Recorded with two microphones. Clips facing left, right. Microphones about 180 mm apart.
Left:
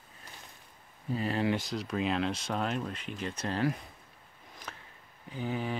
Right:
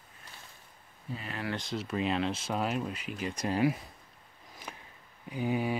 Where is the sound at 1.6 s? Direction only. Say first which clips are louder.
Even; centre (ahead or behind).